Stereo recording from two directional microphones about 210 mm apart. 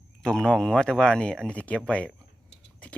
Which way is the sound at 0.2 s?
5° left (ahead or behind).